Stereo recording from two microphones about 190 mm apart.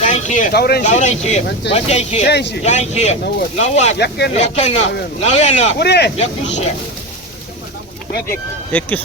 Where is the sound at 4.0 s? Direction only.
60° left (ahead or behind).